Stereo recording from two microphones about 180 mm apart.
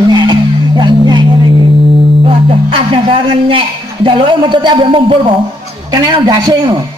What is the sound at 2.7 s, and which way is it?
A woman's voice, 30° right (ahead or behind).